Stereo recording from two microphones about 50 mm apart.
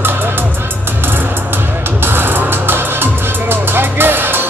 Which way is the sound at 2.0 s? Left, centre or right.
Right.